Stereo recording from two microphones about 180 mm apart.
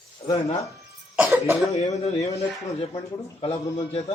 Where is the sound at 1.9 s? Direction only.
40° left (ahead or behind).